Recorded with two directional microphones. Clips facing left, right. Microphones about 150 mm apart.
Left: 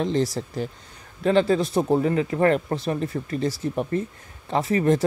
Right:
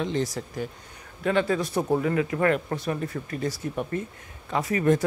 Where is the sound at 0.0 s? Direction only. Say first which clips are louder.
Left 4 dB; 35° left (ahead or behind).